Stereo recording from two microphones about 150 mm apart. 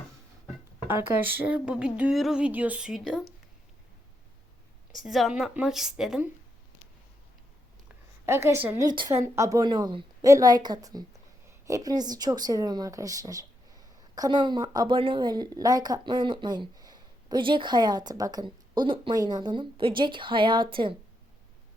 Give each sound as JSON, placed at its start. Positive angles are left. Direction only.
{"t": 0.9, "sound": "speech", "side_deg": -15}
{"t": 5.0, "sound": "a woman's voice", "side_deg": 0}
{"t": 8.3, "sound": "speech", "side_deg": -15}
{"t": 8.9, "sound": "a woman's voice", "side_deg": -30}
{"t": 9.1, "sound": "a woman's voice", "side_deg": -20}